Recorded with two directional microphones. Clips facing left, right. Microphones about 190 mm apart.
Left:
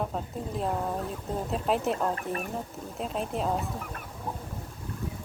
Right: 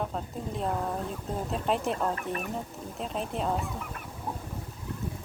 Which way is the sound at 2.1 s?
35° left (ahead or behind).